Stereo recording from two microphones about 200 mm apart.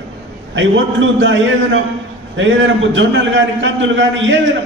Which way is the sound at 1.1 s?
65° right (ahead or behind).